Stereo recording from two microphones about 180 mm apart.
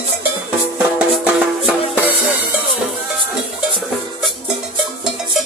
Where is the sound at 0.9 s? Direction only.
5° right (ahead or behind).